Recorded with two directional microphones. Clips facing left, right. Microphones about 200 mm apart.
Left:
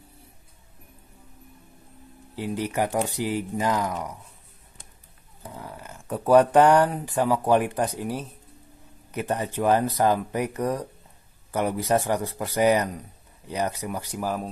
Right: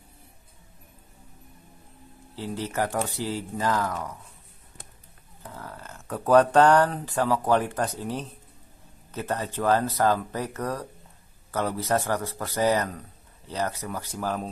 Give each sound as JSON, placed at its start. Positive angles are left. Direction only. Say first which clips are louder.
{"t": 2.3, "sound": "speech", "louder": "left 3 dB", "side_deg": 15}
{"t": 5.4, "sound": "speech", "louder": "left 2 dB", "side_deg": 15}